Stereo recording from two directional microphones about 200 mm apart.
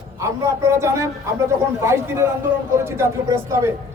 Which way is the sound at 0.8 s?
15° right (ahead or behind).